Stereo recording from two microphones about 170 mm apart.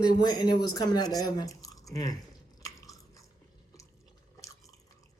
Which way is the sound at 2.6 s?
20° left (ahead or behind).